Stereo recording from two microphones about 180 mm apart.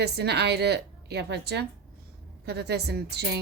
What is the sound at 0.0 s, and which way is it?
A woman's voice, 65° right (ahead or behind).